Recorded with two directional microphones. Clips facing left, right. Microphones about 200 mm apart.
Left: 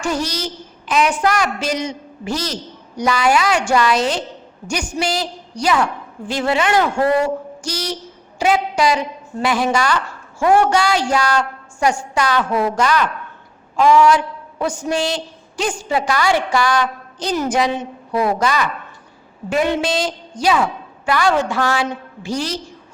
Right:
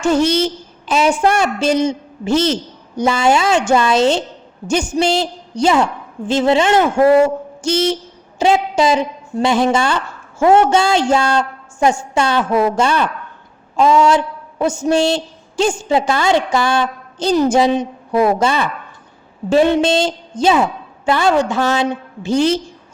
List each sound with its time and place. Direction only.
0.0 s a woman's voice: 25° right (ahead or behind)